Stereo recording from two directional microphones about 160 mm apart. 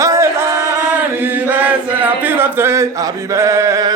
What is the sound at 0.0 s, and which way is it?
Chant, 20° right (ahead or behind).